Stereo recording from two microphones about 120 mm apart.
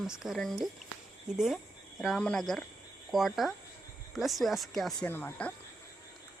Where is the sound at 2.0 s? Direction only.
Centre (ahead or behind).